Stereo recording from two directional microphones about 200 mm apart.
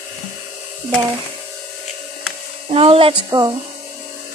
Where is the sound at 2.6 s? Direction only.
30° right (ahead or behind).